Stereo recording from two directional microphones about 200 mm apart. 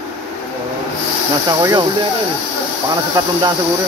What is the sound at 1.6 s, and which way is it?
Speech, 15° right (ahead or behind).